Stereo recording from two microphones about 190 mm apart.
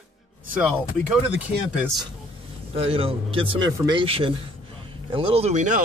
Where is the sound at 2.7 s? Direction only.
30° right (ahead or behind).